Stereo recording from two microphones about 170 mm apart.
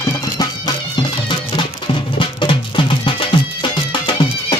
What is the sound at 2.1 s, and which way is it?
Music, 30° left (ahead or behind).